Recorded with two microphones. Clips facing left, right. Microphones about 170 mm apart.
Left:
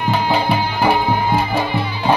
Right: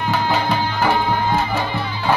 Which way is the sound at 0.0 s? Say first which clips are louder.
Left 2 dB; 15° left (ahead or behind).